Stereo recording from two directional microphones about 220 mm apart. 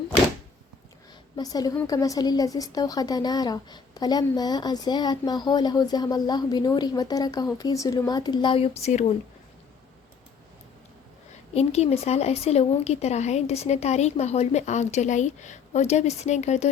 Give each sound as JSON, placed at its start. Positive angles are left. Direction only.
{"t": 1.4, "sound": "a woman's voice", "side_deg": 15}
{"t": 11.5, "sound": "speech", "side_deg": 30}